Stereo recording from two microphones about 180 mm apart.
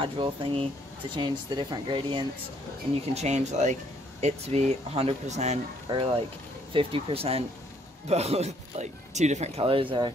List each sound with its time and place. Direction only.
0.0 s speech: 30° right (ahead or behind)
3.2 s speech: 40° right (ahead or behind)
5.9 s speech: 30° right (ahead or behind)